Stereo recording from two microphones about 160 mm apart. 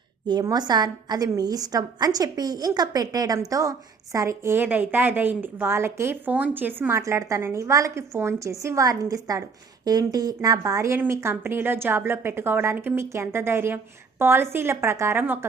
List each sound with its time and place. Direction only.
0.3 s a woman's voice: 25° right (ahead or behind)